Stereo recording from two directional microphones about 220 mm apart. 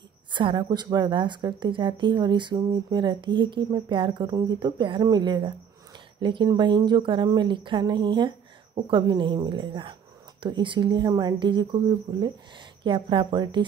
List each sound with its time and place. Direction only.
0.3 s speech: 20° right (ahead or behind)